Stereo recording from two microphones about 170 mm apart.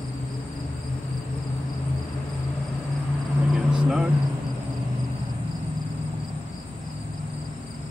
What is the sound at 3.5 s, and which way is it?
Vehicle, 5° right (ahead or behind).